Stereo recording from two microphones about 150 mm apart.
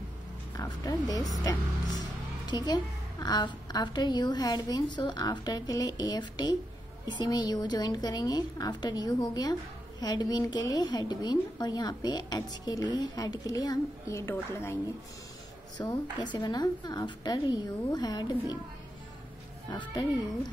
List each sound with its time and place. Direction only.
0.6 s a woman's voice: 25° left (ahead or behind)
15.8 s a woman's voice: 30° left (ahead or behind)
19.7 s a woman's voice: 30° left (ahead or behind)